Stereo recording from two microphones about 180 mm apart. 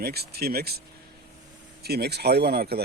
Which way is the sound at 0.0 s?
60° right (ahead or behind).